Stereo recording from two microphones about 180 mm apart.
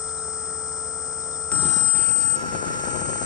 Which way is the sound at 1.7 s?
30° left (ahead or behind).